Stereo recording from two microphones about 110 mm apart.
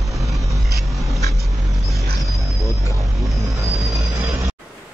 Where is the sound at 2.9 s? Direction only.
30° right (ahead or behind).